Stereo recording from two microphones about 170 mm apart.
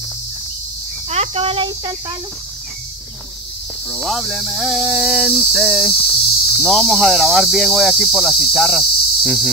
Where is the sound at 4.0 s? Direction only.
Centre (ahead or behind).